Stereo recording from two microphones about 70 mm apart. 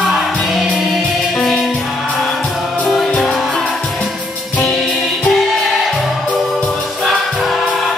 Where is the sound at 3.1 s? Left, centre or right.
Centre.